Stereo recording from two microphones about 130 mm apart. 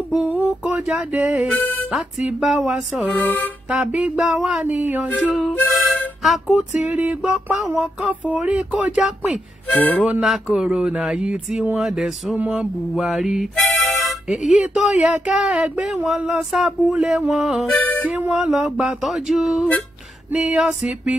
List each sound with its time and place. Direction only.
0.2 s music: 10° right (ahead or behind)
1.9 s speech: 5° right (ahead or behind)
3.2 s music: 10° left (ahead or behind)
3.7 s speech: 5° right (ahead or behind)
5.7 s harmonica: centre (ahead or behind)
6.2 s music: centre (ahead or behind)
9.7 s music: 10° left (ahead or behind)
10.0 s speech: 5° right (ahead or behind)
12.4 s music: 5° right (ahead or behind)
14.4 s speech: 75° left (ahead or behind)
14.7 s speech: 5° right (ahead or behind)
17.6 s music: 10° left (ahead or behind)
18.1 s speech: 5° right (ahead or behind)